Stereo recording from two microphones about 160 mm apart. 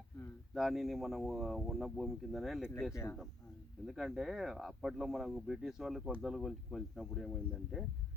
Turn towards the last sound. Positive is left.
turn(degrees=0)  # may be behind; listen again after turning